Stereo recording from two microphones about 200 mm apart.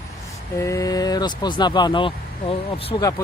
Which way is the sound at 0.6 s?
15° left (ahead or behind).